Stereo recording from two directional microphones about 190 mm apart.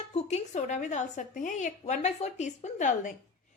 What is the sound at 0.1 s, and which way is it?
A woman's voice, 35° left (ahead or behind).